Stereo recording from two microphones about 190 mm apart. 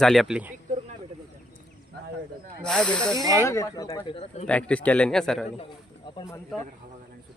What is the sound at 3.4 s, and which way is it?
Speech, 15° left (ahead or behind).